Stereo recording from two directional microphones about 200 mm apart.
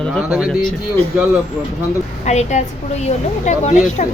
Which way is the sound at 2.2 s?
35° left (ahead or behind).